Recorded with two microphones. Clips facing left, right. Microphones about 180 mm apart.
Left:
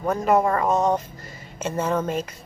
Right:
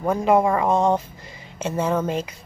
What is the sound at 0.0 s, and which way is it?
A woman's voice, 10° right (ahead or behind).